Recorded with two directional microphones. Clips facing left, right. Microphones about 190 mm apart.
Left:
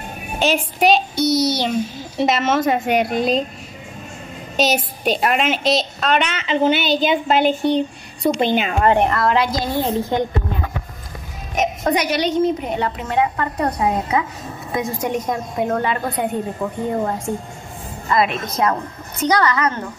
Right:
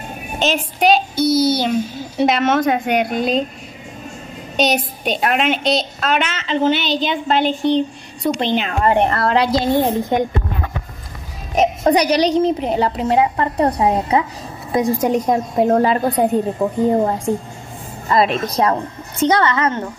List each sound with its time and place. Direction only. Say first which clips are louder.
0.4 s a woman's voice: left 1 dB; 10° left (ahead or behind)
0.8 s a woman's voice: right 2 dB; centre (ahead or behind)
4.6 s a woman's voice: right 1 dB; centre (ahead or behind)
9.1 s a woman's voice: right 2 dB; 35° right (ahead or behind)
9.8 s a woman's voice: right 3 dB; 15° right (ahead or behind)
11.5 s a woman's voice: right 5 dB; 35° right (ahead or behind)
18.0 s a woman's voice: right 3 dB; 35° right (ahead or behind)